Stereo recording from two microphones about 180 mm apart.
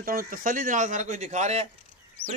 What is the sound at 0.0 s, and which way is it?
Speech, 55° right (ahead or behind).